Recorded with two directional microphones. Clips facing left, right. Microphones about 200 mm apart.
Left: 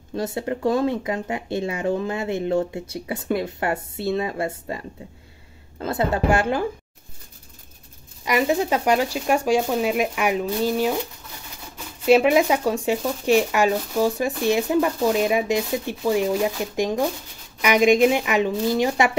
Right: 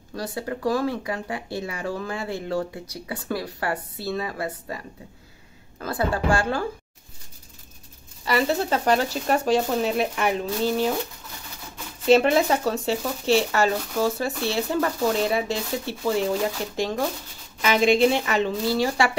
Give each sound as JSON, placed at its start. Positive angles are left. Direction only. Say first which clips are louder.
{"t": 0.1, "sound": "speech", "louder": "left 4 dB", "side_deg": 25}
{"t": 8.3, "sound": "speech", "louder": "left 2 dB", "side_deg": 15}
{"t": 12.0, "sound": "speech", "louder": "left 2 dB", "side_deg": 10}